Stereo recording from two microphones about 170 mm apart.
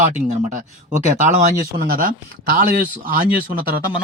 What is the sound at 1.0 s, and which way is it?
Speech, 50° right (ahead or behind).